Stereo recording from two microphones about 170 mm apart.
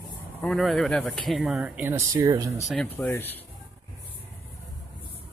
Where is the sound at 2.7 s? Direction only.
5° left (ahead or behind).